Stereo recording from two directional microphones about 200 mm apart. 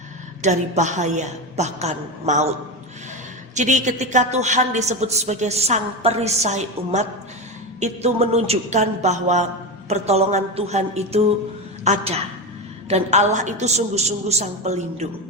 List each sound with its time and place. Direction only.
0.4 s a woman's voice: 35° right (ahead or behind)
3.5 s a woman's voice: 35° right (ahead or behind)